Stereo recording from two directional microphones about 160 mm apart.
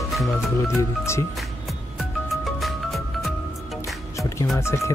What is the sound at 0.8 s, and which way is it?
Speech, 20° left (ahead or behind).